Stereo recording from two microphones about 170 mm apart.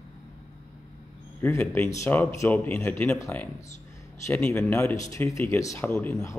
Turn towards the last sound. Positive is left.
turn(degrees=15)  # may be behind; listen again after turning